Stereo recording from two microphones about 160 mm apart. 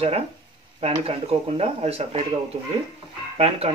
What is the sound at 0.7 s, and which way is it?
Speech, 40° right (ahead or behind).